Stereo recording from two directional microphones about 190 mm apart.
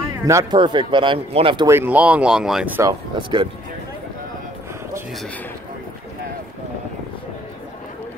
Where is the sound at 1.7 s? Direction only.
10° right (ahead or behind); by 3.4 s 25° right (ahead or behind).